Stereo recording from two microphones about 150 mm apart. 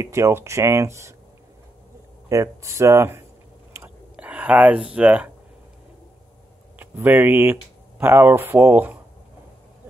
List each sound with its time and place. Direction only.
0.0 s speech: 20° right (ahead or behind)
2.2 s speech: 20° right (ahead or behind)
3.8 s whispering: 10° right (ahead or behind)
4.9 s speech: 10° right (ahead or behind)
6.8 s speech: 10° right (ahead or behind)